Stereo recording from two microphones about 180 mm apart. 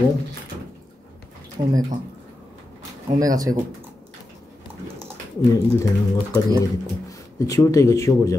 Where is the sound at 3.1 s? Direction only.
20° right (ahead or behind).